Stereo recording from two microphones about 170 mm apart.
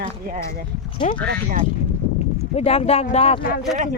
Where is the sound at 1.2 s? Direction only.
50° right (ahead or behind).